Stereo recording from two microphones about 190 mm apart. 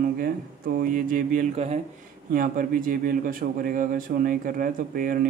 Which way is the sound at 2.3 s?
45° right (ahead or behind).